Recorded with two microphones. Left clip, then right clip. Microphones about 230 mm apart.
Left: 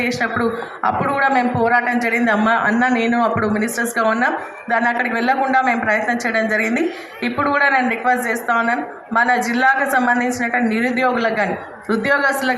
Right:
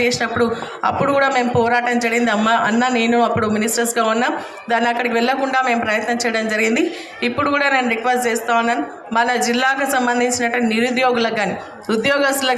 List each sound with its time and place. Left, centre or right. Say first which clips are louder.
0.0 s a man's voice: right 2 dB; right